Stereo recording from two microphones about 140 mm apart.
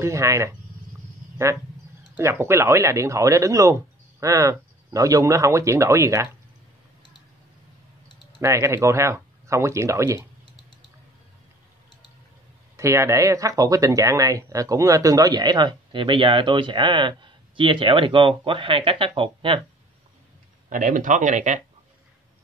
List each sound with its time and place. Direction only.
0.0 s speech: 20° right (ahead or behind)
2.1 s speech: 15° right (ahead or behind)
8.4 s speech: 20° right (ahead or behind)
12.7 s speech: 20° right (ahead or behind); by 19.6 s 40° right (ahead or behind)
20.7 s speech: 70° right (ahead or behind)